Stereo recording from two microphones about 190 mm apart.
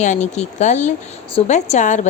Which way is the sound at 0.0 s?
35° left (ahead or behind).